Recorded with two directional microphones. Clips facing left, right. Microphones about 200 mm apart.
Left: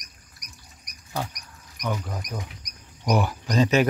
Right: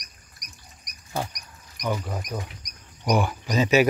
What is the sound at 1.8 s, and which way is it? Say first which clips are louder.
Speech: right 2 dB; 10° right (ahead or behind).